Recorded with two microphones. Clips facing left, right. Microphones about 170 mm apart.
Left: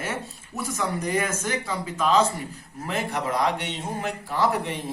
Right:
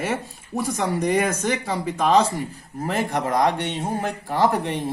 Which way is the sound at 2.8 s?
50° right (ahead or behind).